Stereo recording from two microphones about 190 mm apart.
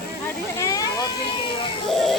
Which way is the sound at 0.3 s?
15° left (ahead or behind).